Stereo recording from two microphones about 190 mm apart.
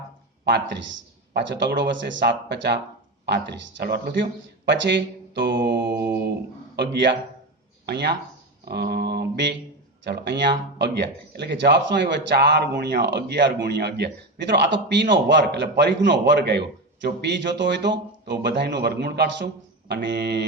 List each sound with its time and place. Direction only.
1.3 s a man's voice: 65° right (ahead or behind)
7.9 s a man's voice: 60° right (ahead or behind)